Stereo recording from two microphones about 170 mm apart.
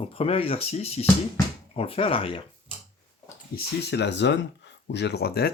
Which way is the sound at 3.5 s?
80° left.